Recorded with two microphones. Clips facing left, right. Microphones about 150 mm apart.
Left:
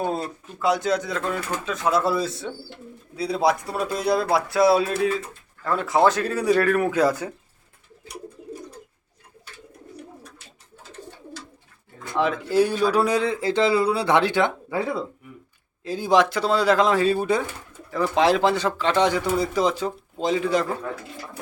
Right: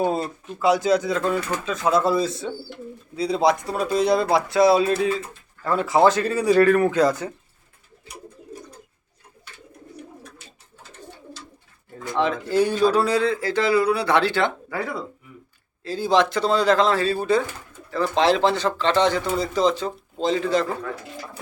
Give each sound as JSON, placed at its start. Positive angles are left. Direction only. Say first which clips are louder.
{"t": 0.0, "sound": "speech", "louder": "right 3 dB", "side_deg": 0}
{"t": 12.1, "sound": "speech", "louder": "even", "side_deg": 5}
{"t": 15.8, "sound": "speech", "louder": "even", "side_deg": 15}